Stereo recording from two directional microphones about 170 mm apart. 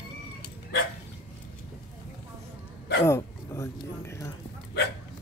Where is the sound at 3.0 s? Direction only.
15° left (ahead or behind).